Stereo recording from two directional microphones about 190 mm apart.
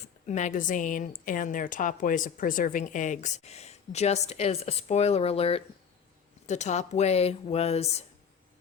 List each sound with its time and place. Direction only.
0.3 s a woman's voice: 40° left (ahead or behind)